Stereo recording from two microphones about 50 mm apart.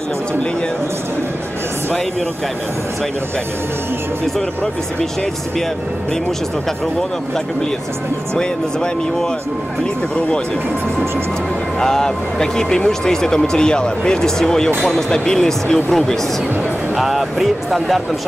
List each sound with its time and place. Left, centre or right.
11.8 s speech: centre
16.9 s speech: centre